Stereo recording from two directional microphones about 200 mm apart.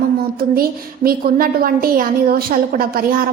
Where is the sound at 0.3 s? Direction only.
50° right (ahead or behind).